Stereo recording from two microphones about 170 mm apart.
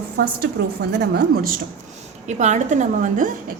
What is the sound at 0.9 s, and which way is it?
Speech, 65° right (ahead or behind).